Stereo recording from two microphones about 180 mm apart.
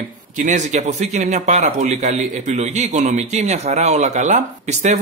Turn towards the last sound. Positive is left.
turn(degrees=-40)  # may be behind; listen again after turning